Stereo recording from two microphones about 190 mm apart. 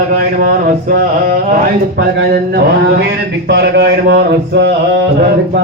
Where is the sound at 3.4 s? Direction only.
60° right (ahead or behind).